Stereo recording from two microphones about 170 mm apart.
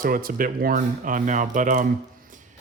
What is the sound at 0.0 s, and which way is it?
Speech, 55° right (ahead or behind).